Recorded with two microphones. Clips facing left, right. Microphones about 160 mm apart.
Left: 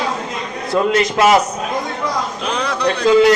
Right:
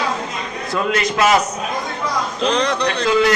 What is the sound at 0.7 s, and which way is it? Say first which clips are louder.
Speech: left 4 dB; 30° left (ahead or behind).